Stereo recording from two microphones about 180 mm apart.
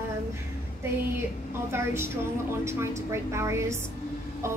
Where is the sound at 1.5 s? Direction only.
15° right (ahead or behind).